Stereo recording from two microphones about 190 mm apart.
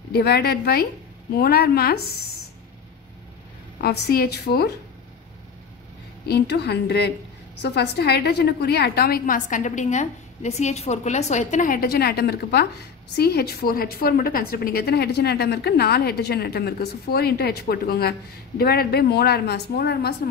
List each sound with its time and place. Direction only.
0.1 s a woman's voice: 55° left (ahead or behind)
3.8 s a woman's voice: 55° left (ahead or behind)
6.2 s a woman's voice: 60° left (ahead or behind)